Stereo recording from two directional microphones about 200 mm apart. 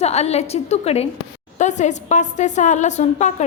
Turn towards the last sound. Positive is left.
turn(degrees=35)  # may be behind; listen again after turning